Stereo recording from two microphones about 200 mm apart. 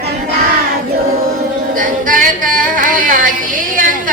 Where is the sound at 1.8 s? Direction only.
40° right (ahead or behind).